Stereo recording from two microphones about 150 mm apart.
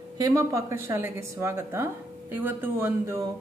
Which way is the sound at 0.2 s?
20° right (ahead or behind).